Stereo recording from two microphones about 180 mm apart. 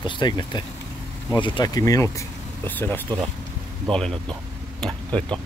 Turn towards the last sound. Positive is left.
turn(degrees=5)  # may be behind; listen again after turning